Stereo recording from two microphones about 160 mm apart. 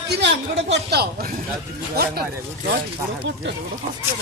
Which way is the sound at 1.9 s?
70° right (ahead or behind).